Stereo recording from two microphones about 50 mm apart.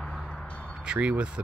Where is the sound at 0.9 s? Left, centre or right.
Right.